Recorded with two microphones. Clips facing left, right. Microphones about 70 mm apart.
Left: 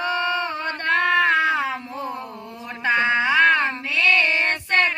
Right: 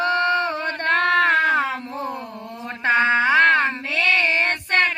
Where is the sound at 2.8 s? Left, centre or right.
Right.